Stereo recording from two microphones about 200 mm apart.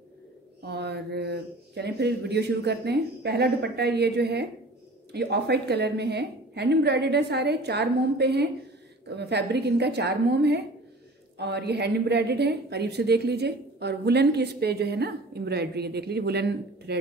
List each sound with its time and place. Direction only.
0.7 s a woman's voice: 55° right (ahead or behind)